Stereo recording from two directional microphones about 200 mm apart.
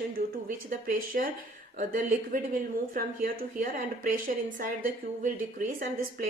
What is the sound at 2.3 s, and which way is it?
A woman's voice, 45° right (ahead or behind).